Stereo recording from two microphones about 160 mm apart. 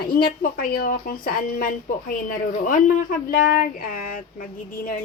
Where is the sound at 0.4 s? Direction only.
60° left (ahead or behind).